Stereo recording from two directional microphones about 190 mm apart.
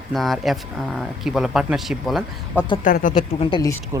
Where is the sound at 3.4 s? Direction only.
25° left (ahead or behind).